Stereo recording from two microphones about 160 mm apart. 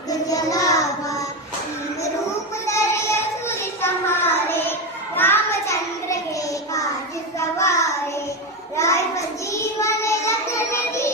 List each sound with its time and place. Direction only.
0.1 s child singing: 20° left (ahead or behind)
2.6 s child singing: 15° left (ahead or behind)
7.3 s a sound: 20° left (ahead or behind)
8.7 s child singing: 20° left (ahead or behind)